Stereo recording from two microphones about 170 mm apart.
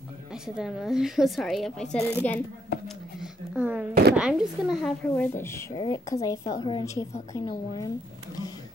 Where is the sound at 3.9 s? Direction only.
70° right (ahead or behind).